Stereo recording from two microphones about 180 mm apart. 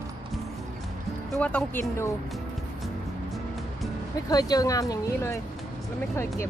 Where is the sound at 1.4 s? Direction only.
10° left (ahead or behind).